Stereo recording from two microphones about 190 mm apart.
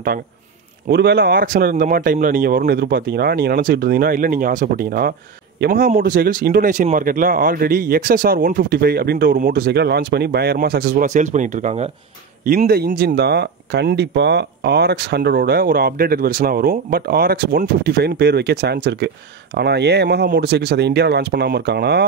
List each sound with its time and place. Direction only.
0.8 s speech: 60° right (ahead or behind); by 11.9 s 35° right (ahead or behind)
12.4 s speech: 50° right (ahead or behind)